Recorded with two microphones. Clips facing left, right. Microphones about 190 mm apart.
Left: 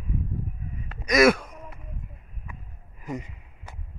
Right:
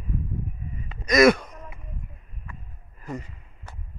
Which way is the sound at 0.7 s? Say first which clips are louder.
Right 1 dB; 5° left (ahead or behind).